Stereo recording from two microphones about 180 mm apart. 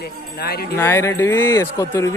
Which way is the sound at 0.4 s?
60° left (ahead or behind).